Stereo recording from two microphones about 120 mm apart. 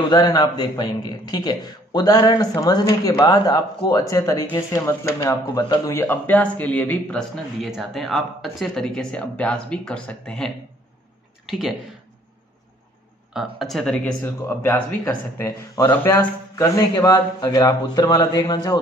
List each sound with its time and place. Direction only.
0.1 s a man's voice: 35° left (ahead or behind); by 11.7 s centre (ahead or behind)
13.3 s speech: centre (ahead or behind)
14.2 s a man's voice: 20° left (ahead or behind)